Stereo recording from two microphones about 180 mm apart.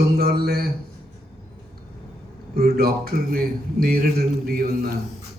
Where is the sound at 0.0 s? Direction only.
60° right (ahead or behind).